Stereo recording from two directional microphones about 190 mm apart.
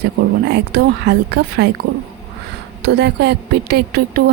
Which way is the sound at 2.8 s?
60° right (ahead or behind).